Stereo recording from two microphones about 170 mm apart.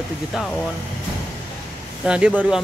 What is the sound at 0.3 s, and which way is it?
Speech, 5° left (ahead or behind).